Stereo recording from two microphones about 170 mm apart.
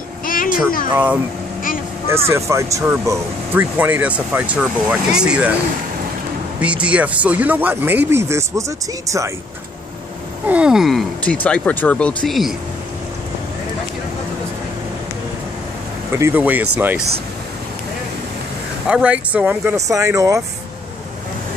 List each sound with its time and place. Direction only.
0.2 s a sound: 55° left (ahead or behind)
0.9 s speech: 10° right (ahead or behind)
2.2 s speech: 15° right (ahead or behind)
6.6 s speech: 5° right (ahead or behind)
10.4 s speech: 5° right (ahead or behind)
16.1 s speech: 15° right (ahead or behind)
18.9 s speech: 5° right (ahead or behind)